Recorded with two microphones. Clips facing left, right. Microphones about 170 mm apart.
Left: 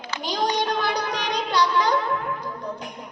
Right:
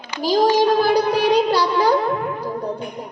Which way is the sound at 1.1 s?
5° right (ahead or behind).